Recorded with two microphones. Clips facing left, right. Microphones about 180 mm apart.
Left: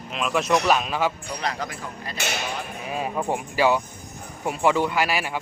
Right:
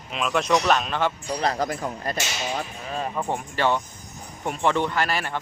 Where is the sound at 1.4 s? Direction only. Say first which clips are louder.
Right 5 dB; 35° right (ahead or behind).